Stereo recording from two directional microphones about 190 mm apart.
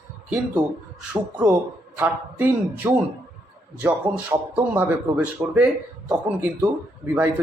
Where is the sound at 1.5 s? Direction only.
10° right (ahead or behind).